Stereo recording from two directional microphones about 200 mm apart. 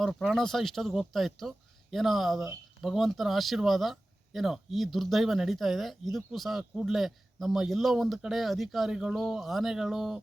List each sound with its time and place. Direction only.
0.0 s speech: centre (ahead or behind)